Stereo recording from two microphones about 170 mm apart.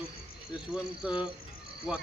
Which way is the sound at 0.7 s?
5° right (ahead or behind).